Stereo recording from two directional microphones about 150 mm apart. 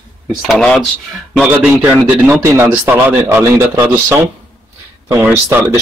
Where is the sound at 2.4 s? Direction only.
20° right (ahead or behind).